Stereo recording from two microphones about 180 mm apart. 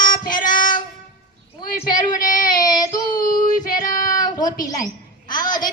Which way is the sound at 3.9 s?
25° left (ahead or behind).